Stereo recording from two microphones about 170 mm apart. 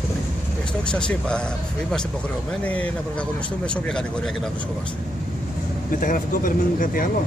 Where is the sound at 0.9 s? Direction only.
5° left (ahead or behind).